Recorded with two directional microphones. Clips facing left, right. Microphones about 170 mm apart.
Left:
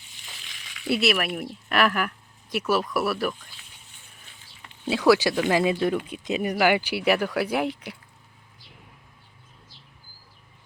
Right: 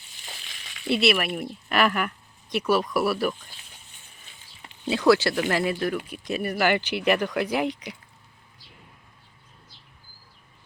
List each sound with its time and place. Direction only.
0.3 s frying: 35° right (ahead or behind)
0.9 s speech: 5° left (ahead or behind)
4.9 s speech: 10° left (ahead or behind)